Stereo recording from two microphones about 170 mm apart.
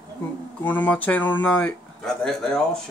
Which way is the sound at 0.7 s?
10° left (ahead or behind).